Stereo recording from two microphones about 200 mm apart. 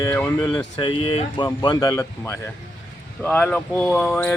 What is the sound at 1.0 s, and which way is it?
Speech, 25° left (ahead or behind).